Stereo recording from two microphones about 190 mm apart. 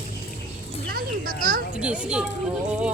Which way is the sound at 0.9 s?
50° right (ahead or behind).